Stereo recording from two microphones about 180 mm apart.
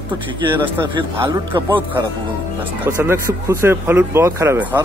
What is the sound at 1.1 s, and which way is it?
Speech, 15° right (ahead or behind).